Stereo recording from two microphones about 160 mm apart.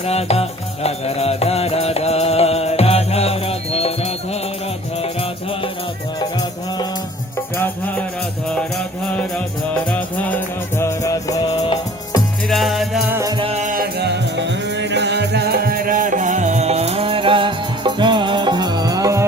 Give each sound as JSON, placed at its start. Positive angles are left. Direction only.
{"t": 0.0, "sound": "music", "side_deg": 40}
{"t": 7.5, "sound": "music", "side_deg": 10}
{"t": 10.2, "sound": "music", "side_deg": 10}
{"t": 12.5, "sound": "music", "side_deg": 0}
{"t": 13.1, "sound": "music", "side_deg": -15}
{"t": 13.3, "sound": "music", "side_deg": -35}
{"t": 13.6, "sound": "music", "side_deg": -55}
{"t": 13.8, "sound": "music", "side_deg": -90}